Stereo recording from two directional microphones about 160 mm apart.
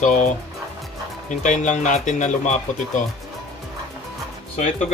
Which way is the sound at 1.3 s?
50° left (ahead or behind).